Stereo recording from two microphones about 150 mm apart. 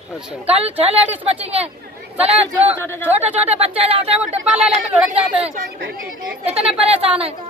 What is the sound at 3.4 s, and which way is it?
Speech, 45° right (ahead or behind).